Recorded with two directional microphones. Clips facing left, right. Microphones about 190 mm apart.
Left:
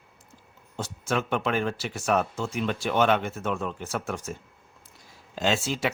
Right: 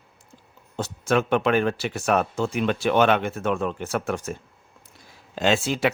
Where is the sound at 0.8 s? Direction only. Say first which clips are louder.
Right 6 dB; 65° right (ahead or behind).